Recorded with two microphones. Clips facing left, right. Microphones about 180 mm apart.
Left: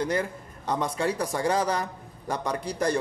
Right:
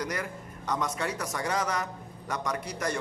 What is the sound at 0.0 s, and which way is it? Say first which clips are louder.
A man's voice: left 6 dB; 30° left (ahead or behind).